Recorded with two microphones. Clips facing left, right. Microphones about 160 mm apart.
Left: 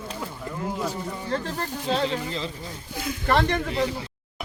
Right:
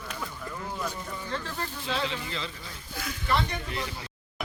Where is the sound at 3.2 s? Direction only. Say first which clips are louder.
Left 7 dB; 65° left (ahead or behind).